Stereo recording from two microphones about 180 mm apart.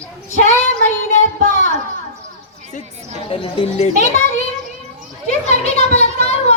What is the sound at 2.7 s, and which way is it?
Children playing, 35° left (ahead or behind).